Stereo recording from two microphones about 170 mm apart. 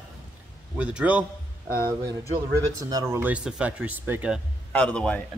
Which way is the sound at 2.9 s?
20° right (ahead or behind).